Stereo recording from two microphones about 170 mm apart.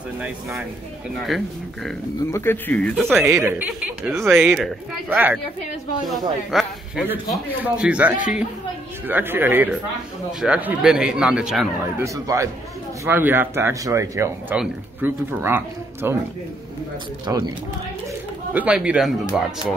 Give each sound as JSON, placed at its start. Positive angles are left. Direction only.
{"t": 0.2, "sound": "speech", "side_deg": -5}
{"t": 2.3, "sound": "speech", "side_deg": 15}
{"t": 3.1, "sound": "speech", "side_deg": -15}
{"t": 4.4, "sound": "speech", "side_deg": 0}
{"t": 5.1, "sound": "speech", "side_deg": -10}
{"t": 12.0, "sound": "speech", "side_deg": -15}
{"t": 17.3, "sound": "speech", "side_deg": -15}
{"t": 18.5, "sound": "speech", "side_deg": -10}